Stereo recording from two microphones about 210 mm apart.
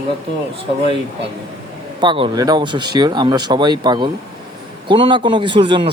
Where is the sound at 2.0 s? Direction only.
25° right (ahead or behind).